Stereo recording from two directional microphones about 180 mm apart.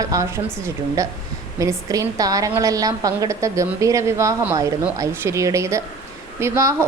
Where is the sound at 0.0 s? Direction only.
20° right (ahead or behind).